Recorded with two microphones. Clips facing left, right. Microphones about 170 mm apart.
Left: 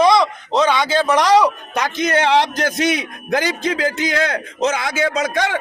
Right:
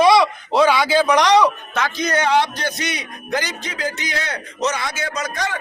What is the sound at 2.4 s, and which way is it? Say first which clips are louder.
A man's voice: left 4 dB; 90° left.